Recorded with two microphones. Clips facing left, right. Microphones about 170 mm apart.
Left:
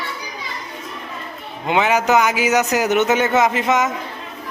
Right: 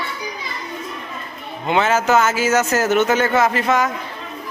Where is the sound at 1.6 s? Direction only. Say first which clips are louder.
Even; 15° left (ahead or behind).